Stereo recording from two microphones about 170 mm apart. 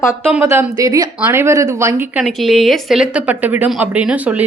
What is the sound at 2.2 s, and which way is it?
A woman's voice, centre (ahead or behind).